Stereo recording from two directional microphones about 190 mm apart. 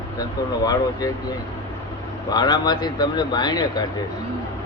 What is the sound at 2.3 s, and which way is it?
Speech, 20° left (ahead or behind).